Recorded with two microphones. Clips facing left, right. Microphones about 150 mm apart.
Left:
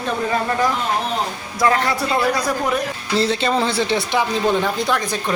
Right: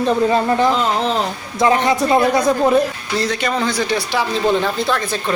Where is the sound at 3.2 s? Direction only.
30° left (ahead or behind).